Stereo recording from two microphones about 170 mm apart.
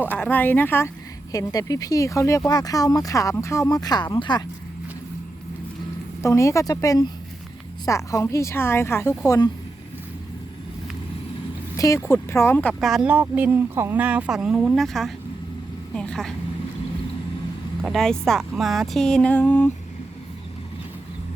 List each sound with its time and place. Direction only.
0.0 s a woman's voice: 10° left (ahead or behind)
6.2 s a woman's voice: 15° left (ahead or behind)
11.8 s a woman's voice: 15° left (ahead or behind)
17.8 s speech: 5° left (ahead or behind)